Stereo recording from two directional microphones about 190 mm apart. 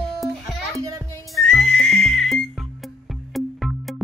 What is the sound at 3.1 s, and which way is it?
Music, centre (ahead or behind).